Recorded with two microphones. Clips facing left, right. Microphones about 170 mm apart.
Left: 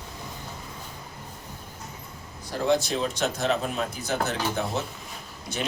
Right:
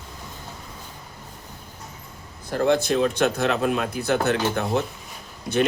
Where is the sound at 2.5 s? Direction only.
55° right (ahead or behind).